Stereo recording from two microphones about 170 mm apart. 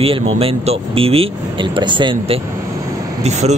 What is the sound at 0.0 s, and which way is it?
Speech, 35° right (ahead or behind).